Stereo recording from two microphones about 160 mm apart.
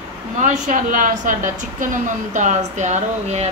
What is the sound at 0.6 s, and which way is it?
A woman's voice, 55° right (ahead or behind).